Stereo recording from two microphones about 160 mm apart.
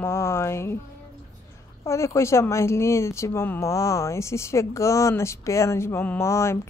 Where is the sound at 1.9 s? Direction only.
20° left (ahead or behind).